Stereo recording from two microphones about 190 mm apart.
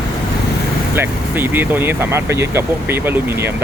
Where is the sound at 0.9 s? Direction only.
10° right (ahead or behind).